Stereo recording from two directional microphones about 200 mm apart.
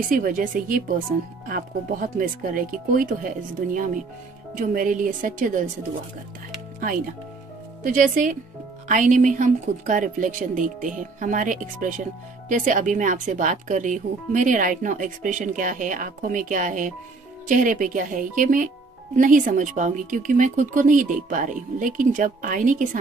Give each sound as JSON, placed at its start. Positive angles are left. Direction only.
{"t": 0.1, "sound": "speech", "side_deg": -45}
{"t": 7.8, "sound": "speech", "side_deg": -40}